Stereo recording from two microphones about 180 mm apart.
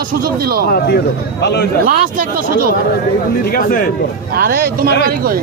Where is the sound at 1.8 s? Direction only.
50° right (ahead or behind).